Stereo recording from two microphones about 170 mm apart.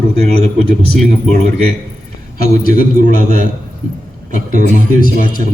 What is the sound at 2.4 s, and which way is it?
Speech, 55° left (ahead or behind).